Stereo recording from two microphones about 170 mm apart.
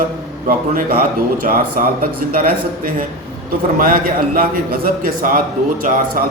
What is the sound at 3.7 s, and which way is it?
A man's voice, 55° right (ahead or behind).